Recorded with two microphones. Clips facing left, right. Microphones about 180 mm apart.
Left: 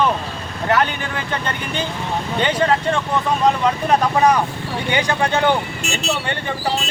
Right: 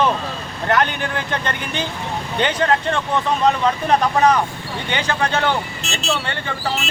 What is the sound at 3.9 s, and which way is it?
Speech, 10° left (ahead or behind).